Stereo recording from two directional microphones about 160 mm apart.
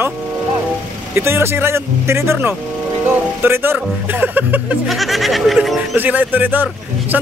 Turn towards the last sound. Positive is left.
turn(degrees=-10)  # may be behind; listen again after turning